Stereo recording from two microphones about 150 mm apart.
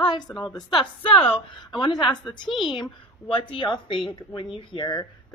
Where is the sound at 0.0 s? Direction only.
30° left (ahead or behind).